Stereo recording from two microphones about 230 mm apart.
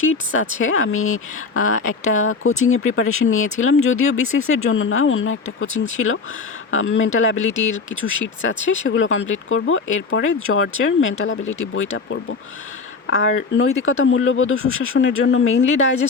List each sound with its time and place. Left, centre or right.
0.0 s speech: left
13.1 s speech: left
13.6 s speech: left